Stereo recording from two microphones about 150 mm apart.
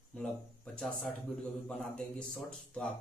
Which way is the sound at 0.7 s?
5° left (ahead or behind).